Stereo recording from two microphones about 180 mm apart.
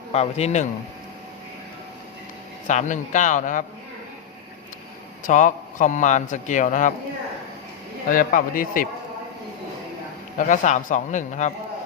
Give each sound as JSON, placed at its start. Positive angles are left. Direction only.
{"t": 0.1, "sound": "speech", "side_deg": 35}
{"t": 2.6, "sound": "a man's voice", "side_deg": 40}
{"t": 5.2, "sound": "a man's voice", "side_deg": 45}
{"t": 8.1, "sound": "a man's voice", "side_deg": 50}
{"t": 10.3, "sound": "a man's voice", "side_deg": 45}